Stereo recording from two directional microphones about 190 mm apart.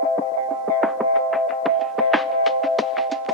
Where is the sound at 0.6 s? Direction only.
Centre (ahead or behind).